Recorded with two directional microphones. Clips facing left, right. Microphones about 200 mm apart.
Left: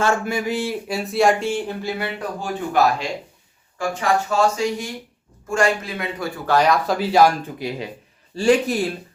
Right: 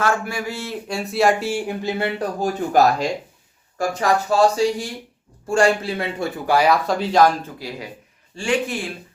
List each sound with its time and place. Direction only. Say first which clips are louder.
0.0 s a man's voice: left 2 dB; 25° left (ahead or behind)
0.9 s speech: even; centre (ahead or behind)
1.8 s speech: right 3 dB; 20° right (ahead or behind)
2.1 s speech: right 4 dB; 40° right (ahead or behind)
6.4 s speech: even; 10° right (ahead or behind); by 7.3 s 5° left (ahead or behind)
7.6 s a man's voice: left 5 dB; 20° left (ahead or behind)
8.4 s speech: left 5 dB; 40° left (ahead or behind)